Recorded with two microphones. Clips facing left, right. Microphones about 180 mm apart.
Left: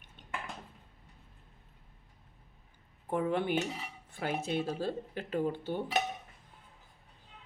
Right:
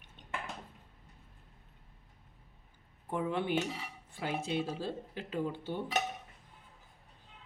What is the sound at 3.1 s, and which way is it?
Speech, 45° left (ahead or behind).